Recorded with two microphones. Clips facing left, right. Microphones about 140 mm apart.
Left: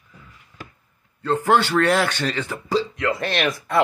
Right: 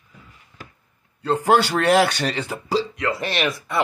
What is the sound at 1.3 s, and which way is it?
A man's voice, 10° right (ahead or behind).